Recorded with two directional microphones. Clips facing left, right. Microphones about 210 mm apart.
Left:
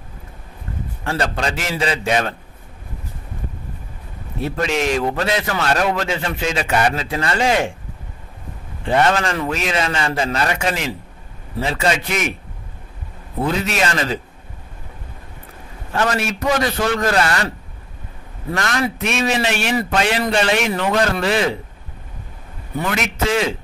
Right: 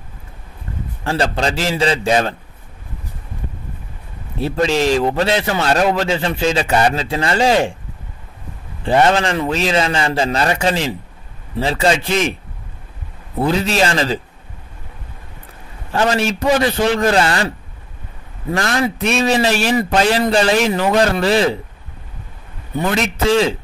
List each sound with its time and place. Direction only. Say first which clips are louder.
1.0 s a man's voice: right 3 dB; 30° right (ahead or behind)
4.4 s a man's voice: right 4 dB; 30° right (ahead or behind)
8.8 s a man's voice: right 3 dB; 30° right (ahead or behind)
13.4 s a man's voice: right 4 dB; 30° right (ahead or behind)
15.9 s a man's voice: right 3 dB; 30° right (ahead or behind)
18.5 s a man's voice: right 3 dB; 30° right (ahead or behind)
22.8 s a man's voice: right 3 dB; 30° right (ahead or behind)